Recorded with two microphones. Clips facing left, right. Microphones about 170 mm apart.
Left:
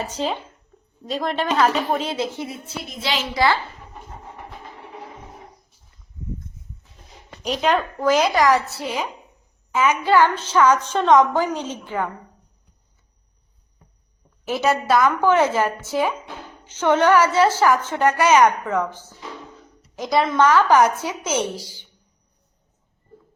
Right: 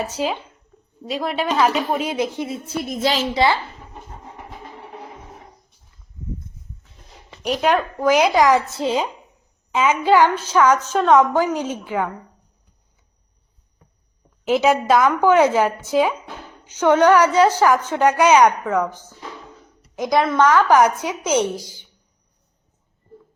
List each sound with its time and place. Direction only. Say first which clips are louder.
0.0 s a woman's voice: right 2 dB; 10° right (ahead or behind)
2.6 s speech: right 8 dB; 50° right (ahead or behind)
3.3 s speech: left 1 dB; 20° right (ahead or behind)
7.4 s a woman's voice: right 2 dB; 10° right (ahead or behind)
14.4 s a woman's voice: right 4 dB; 15° right (ahead or behind)